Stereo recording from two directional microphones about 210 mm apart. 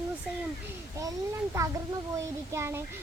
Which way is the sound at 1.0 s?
15° right (ahead or behind).